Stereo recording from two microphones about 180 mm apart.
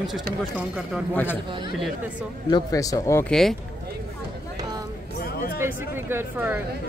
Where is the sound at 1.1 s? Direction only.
10° left (ahead or behind).